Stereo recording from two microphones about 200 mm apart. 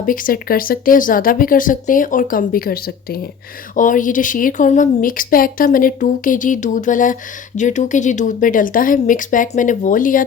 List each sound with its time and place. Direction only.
0.0 s a woman's voice: 45° left (ahead or behind)